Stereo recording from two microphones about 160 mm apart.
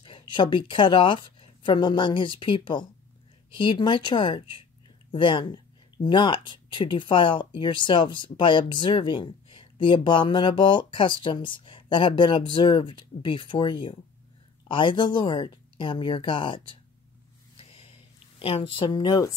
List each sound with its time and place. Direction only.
0.0 s speech: 30° left (ahead or behind)
18.4 s speech: 35° left (ahead or behind)